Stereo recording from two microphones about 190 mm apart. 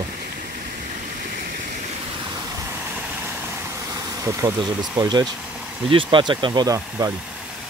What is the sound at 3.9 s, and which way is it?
Speech, 15° right (ahead or behind).